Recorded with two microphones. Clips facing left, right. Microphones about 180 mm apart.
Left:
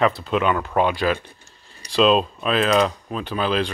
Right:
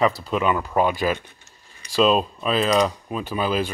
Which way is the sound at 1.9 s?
5° right (ahead or behind).